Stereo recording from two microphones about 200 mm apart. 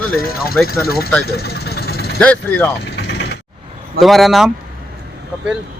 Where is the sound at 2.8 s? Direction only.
60° left (ahead or behind).